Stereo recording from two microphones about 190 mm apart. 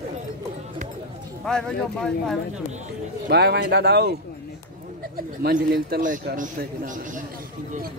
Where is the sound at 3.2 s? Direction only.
60° right (ahead or behind).